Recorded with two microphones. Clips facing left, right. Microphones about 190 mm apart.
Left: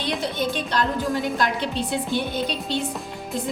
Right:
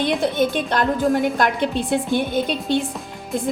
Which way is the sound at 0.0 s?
50° right (ahead or behind).